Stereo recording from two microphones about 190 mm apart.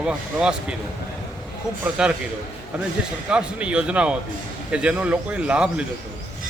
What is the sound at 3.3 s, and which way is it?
A man's voice, 5° right (ahead or behind).